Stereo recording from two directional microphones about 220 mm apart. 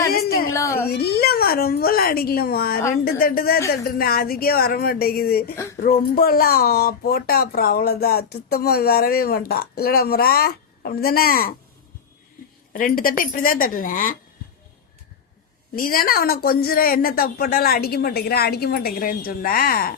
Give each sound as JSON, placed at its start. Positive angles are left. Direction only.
{"t": 0.1, "sound": "a sound", "side_deg": 40}
{"t": 0.5, "sound": "baby cry", "side_deg": 15}
{"t": 0.9, "sound": "a woman's voice", "side_deg": 45}
{"t": 12.7, "sound": "a woman's voice", "side_deg": 40}
{"t": 15.7, "sound": "speech", "side_deg": 40}